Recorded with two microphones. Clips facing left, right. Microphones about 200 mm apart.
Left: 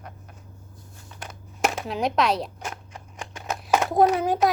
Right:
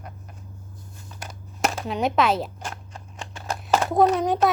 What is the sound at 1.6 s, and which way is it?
Speech, centre (ahead or behind).